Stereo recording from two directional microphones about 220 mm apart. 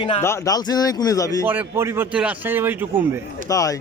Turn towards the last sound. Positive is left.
turn(degrees=15)  # may be behind; listen again after turning